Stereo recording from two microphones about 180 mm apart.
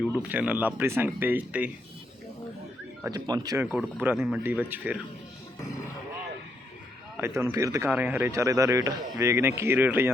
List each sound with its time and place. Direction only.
0.0 s speech: 5° right (ahead or behind)
3.1 s speech: 20° right (ahead or behind)
7.2 s speech: 15° right (ahead or behind)